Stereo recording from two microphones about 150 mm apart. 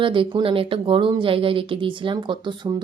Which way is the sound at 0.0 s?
35° right (ahead or behind).